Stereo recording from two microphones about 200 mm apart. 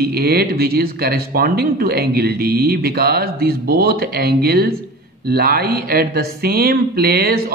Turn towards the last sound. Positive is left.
turn(degrees=-50)  # may be behind; listen again after turning